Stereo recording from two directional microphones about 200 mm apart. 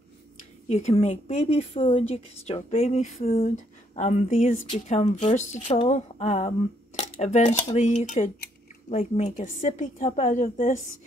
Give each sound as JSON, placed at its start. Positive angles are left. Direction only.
{"t": 0.7, "sound": "a woman's voice", "side_deg": 35}